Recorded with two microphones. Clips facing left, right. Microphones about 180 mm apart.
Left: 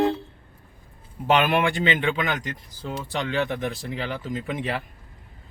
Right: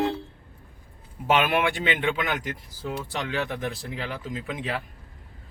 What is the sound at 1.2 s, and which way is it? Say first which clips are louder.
Speech: left 2 dB; centre (ahead or behind).